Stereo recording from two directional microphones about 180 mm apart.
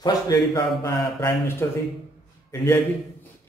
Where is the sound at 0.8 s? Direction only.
15° left (ahead or behind).